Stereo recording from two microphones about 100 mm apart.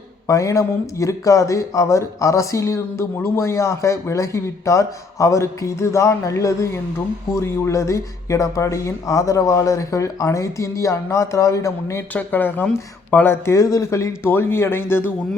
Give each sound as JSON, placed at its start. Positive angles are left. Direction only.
{"t": 0.3, "sound": "speech", "side_deg": 30}
{"t": 12.1, "sound": "speech", "side_deg": 20}